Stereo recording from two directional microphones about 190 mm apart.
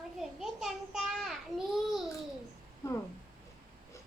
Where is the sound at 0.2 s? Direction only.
Centre (ahead or behind).